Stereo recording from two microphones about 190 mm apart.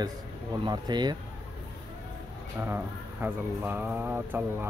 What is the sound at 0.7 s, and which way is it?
Speech, 20° right (ahead or behind).